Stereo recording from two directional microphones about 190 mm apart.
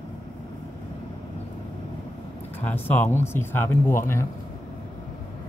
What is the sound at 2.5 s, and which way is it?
Speech, 10° left (ahead or behind).